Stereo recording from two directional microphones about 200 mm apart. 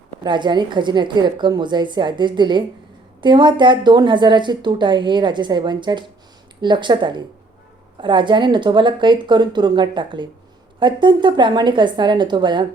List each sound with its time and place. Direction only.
0.2 s a woman's voice: 20° right (ahead or behind)